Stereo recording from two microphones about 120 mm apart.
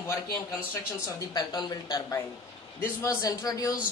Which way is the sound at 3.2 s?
30° left (ahead or behind).